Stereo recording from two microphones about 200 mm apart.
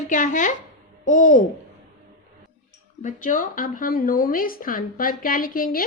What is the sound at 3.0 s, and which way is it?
Speech, 40° left (ahead or behind).